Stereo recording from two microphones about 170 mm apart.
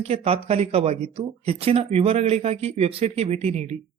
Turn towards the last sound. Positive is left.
turn(degrees=-40)  # may be behind; listen again after turning